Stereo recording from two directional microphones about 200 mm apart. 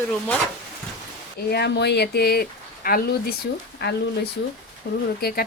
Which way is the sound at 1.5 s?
55° left (ahead or behind).